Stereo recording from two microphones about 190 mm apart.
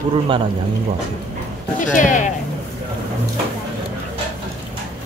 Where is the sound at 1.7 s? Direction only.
45° left (ahead or behind).